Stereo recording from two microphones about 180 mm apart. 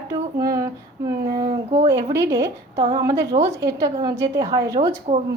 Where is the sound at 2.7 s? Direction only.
30° right (ahead or behind).